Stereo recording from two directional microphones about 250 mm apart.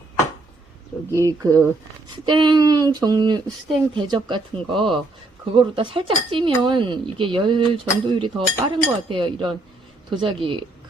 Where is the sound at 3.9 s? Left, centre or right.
Centre.